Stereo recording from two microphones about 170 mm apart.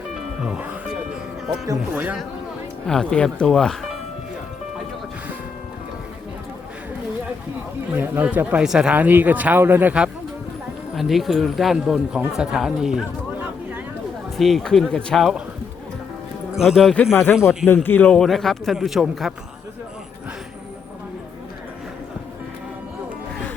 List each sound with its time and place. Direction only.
0.4 s speech: 10° right (ahead or behind)
1.6 s speech: 20° right (ahead or behind)
2.0 s speech: 10° right (ahead or behind)
2.8 s a man's voice: 5° left (ahead or behind)
7.9 s a man's voice: 10° right (ahead or behind)
16.6 s a man's voice: centre (ahead or behind)